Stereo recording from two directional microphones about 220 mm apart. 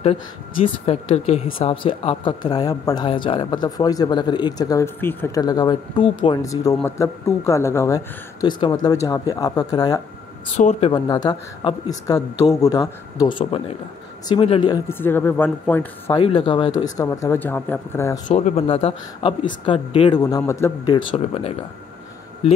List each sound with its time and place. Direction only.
0.8 s speech: 30° left (ahead or behind)
10.5 s speech: 30° left (ahead or behind)
10.9 s speech: 20° left (ahead or behind)
16.2 s speech: 25° left (ahead or behind)
18.3 s speech: 30° left (ahead or behind)